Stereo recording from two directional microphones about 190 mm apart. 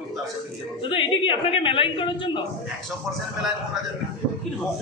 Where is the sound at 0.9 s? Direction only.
25° left (ahead or behind).